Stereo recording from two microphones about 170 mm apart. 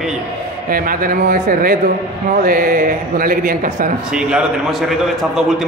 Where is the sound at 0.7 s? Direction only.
55° right (ahead or behind).